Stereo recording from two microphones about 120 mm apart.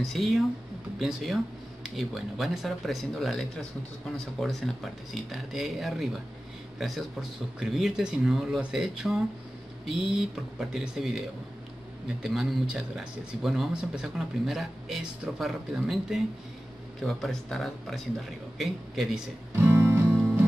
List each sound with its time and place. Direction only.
0.0 s speech: centre (ahead or behind)
19.6 s music: 20° right (ahead or behind)